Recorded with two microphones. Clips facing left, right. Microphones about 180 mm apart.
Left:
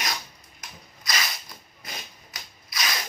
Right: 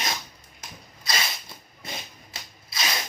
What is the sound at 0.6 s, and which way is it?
Rub, 30° right (ahead or behind).